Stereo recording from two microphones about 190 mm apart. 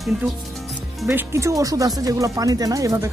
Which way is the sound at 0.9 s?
5° right (ahead or behind).